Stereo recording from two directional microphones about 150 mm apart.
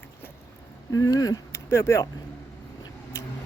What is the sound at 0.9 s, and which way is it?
Speech, 25° left (ahead or behind).